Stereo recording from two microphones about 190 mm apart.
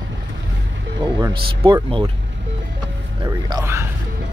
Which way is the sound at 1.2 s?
20° right (ahead or behind).